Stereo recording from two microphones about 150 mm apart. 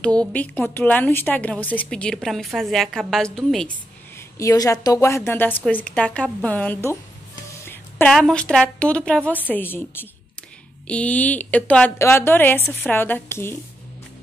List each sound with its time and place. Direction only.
0.0 s a woman's voice: 5° left (ahead or behind)
4.4 s a woman's voice: 20° left (ahead or behind)
7.6 s a sound: 15° left (ahead or behind)
8.1 s a woman's voice: 5° left (ahead or behind)